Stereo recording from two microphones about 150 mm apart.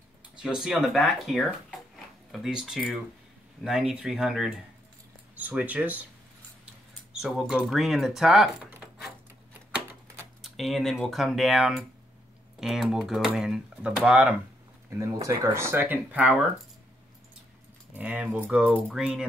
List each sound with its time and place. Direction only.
0.4 s speech: 5° right (ahead or behind)
7.1 s speech: 5° right (ahead or behind)
10.4 s speech: centre (ahead or behind)
14.9 s speech: 20° right (ahead or behind)
17.9 s speech: 10° right (ahead or behind)